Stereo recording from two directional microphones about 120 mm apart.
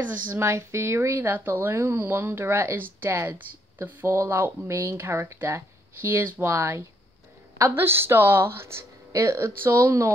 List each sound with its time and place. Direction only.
0.3 s speech: 20° right (ahead or behind)